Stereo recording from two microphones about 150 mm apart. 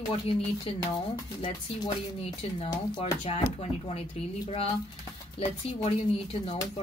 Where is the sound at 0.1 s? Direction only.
40° left (ahead or behind).